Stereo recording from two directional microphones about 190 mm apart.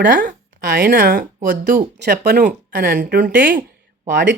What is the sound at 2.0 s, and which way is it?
Speech, 60° right (ahead or behind).